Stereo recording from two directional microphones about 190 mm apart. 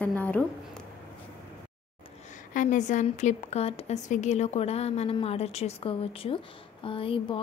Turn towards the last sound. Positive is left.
turn(degrees=30)  # may be behind; listen again after turning